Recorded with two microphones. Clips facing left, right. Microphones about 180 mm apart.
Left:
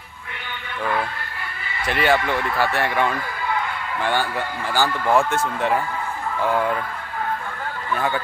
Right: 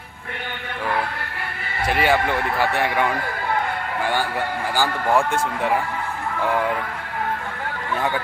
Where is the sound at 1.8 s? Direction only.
10° right (ahead or behind).